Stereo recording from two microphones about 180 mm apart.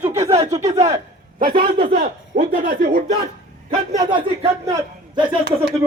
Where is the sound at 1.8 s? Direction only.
50° right (ahead or behind).